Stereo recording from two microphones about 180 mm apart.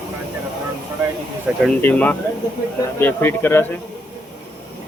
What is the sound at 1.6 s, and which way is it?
A man's voice, 10° left (ahead or behind).